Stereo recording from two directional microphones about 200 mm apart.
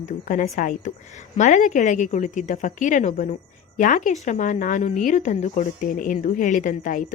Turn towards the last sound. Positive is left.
turn(degrees=40)  # may be behind; listen again after turning